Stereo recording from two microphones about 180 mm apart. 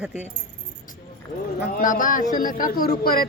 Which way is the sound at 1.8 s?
50° left (ahead or behind).